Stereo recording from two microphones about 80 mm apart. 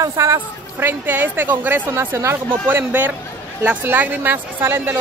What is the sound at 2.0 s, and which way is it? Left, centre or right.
A woman's voice, right.